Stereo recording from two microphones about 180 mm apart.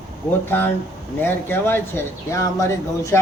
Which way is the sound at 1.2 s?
10° left (ahead or behind).